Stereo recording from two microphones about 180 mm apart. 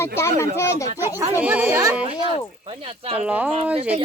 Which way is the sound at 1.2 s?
10° right (ahead or behind).